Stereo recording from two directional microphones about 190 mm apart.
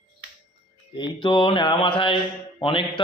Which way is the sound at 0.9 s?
25° left (ahead or behind).